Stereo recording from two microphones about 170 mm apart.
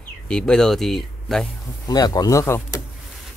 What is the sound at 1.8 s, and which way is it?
Speech, 20° left (ahead or behind).